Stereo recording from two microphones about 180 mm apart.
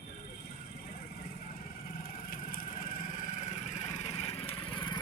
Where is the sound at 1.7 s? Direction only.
55° left (ahead or behind).